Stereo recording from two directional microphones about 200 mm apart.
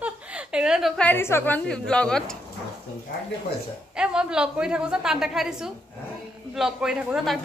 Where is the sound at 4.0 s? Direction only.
5° right (ahead or behind).